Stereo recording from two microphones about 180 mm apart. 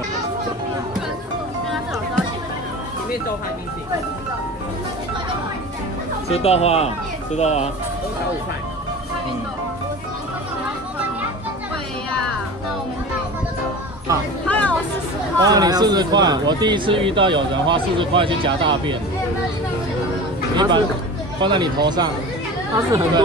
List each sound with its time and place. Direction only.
6.2 s speech: 35° left (ahead or behind)
14.5 s a sound: 10° left (ahead or behind)
15.4 s speech: 20° right (ahead or behind)
20.5 s speech: 25° right (ahead or behind)